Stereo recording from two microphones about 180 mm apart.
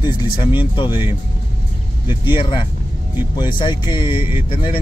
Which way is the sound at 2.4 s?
25° left (ahead or behind).